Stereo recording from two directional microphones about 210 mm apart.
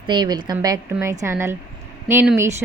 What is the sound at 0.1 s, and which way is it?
A woman's voice, 20° right (ahead or behind).